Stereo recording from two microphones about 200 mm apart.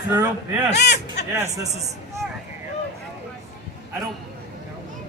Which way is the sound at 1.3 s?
15° right (ahead or behind).